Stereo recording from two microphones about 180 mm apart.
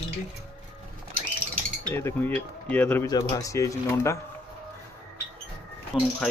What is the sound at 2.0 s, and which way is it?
Speech, 10° left (ahead or behind).